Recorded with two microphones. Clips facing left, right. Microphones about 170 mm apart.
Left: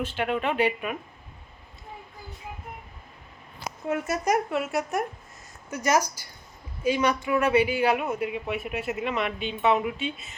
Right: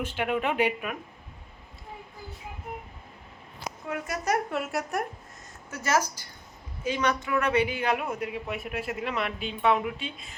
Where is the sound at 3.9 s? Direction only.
20° left (ahead or behind).